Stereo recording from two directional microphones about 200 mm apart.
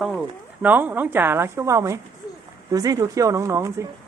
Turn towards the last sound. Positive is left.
turn(degrees=-15)  # may be behind; listen again after turning